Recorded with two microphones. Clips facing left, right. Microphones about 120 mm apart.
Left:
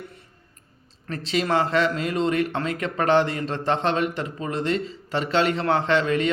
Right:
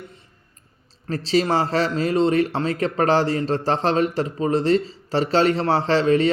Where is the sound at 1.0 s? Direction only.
35° right (ahead or behind).